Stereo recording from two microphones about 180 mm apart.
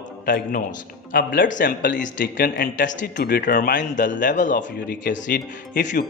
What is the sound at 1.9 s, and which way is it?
Speech, 45° left (ahead or behind).